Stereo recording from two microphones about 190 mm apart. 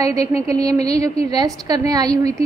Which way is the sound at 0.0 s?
20° right (ahead or behind).